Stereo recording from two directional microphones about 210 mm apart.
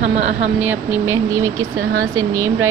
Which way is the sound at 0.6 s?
10° right (ahead or behind).